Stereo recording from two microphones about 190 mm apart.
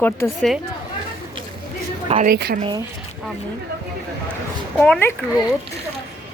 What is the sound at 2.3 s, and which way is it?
Speech, 55° right (ahead or behind).